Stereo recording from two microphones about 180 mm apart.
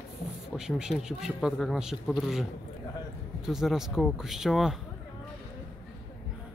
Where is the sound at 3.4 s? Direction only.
Centre (ahead or behind).